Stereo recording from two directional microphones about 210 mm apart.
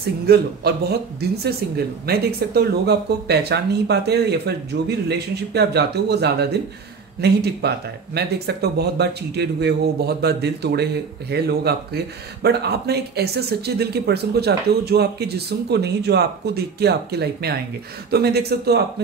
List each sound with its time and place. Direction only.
0.0 s speech: 50° right (ahead or behind)